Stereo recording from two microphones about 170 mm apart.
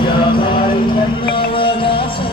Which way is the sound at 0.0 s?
30° left (ahead or behind).